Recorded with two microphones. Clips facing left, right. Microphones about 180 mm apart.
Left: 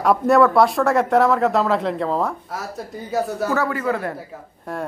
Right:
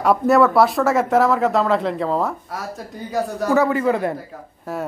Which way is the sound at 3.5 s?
20° right (ahead or behind).